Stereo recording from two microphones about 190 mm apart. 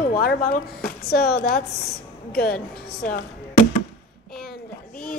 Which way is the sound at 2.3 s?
55° left (ahead or behind).